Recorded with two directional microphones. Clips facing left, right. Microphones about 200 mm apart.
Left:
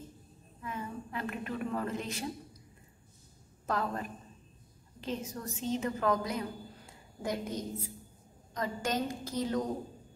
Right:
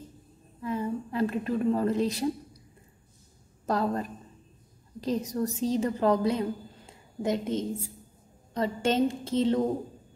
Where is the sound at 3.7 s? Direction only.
35° right (ahead or behind).